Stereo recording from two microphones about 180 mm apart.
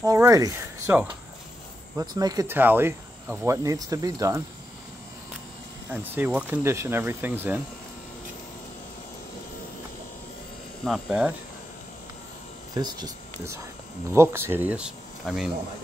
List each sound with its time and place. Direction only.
0.0 s speech: 20° right (ahead or behind)
5.9 s speech: 10° right (ahead or behind)
10.8 s speech: centre (ahead or behind)
12.7 s speech: 20° right (ahead or behind); by 15.5 s 5° right (ahead or behind)